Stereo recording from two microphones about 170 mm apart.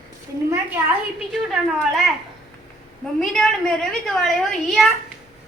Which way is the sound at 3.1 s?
Centre (ahead or behind).